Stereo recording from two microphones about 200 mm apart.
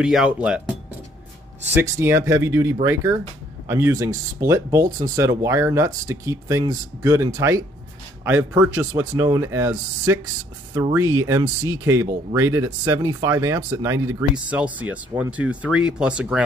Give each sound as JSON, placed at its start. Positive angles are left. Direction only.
{"t": 0.0, "sound": "speech", "side_deg": -5}
{"t": 1.7, "sound": "speech", "side_deg": -10}